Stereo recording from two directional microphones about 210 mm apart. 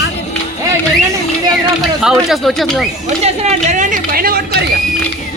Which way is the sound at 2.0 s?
Centre (ahead or behind).